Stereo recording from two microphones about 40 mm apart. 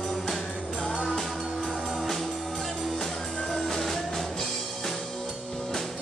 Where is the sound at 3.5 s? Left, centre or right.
Centre.